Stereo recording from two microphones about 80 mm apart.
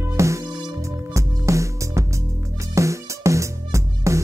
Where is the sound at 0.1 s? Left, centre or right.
Right.